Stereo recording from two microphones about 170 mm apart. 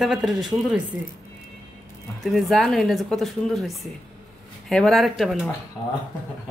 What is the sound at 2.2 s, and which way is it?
Speech, centre (ahead or behind).